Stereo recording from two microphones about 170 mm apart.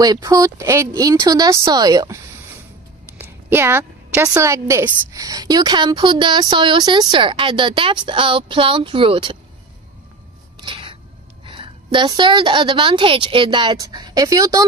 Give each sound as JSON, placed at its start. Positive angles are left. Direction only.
{"t": 0.0, "sound": "a woman's voice", "side_deg": -20}
{"t": 3.2, "sound": "a woman's voice", "side_deg": -10}
{"t": 10.6, "sound": "a sound", "side_deg": -30}
{"t": 11.4, "sound": "a woman's voice", "side_deg": -30}